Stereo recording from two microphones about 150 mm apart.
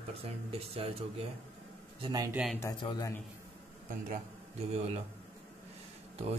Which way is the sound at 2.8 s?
30° left (ahead or behind).